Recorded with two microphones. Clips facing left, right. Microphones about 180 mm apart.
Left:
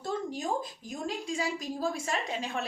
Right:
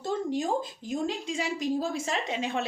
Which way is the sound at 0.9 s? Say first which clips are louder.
Right 5 dB; 25° right (ahead or behind).